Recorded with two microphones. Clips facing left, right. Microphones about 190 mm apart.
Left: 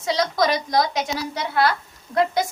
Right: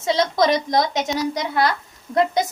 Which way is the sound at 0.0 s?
25° right (ahead or behind).